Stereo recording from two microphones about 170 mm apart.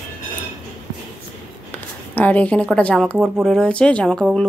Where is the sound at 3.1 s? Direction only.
10° right (ahead or behind).